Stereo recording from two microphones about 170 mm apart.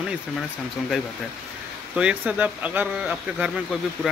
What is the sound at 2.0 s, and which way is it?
Speech, 5° right (ahead or behind).